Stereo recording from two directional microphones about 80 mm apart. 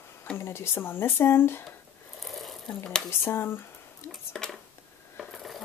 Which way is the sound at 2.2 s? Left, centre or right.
Centre.